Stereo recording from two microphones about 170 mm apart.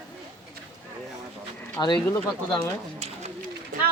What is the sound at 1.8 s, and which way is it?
Speech, 25° left (ahead or behind).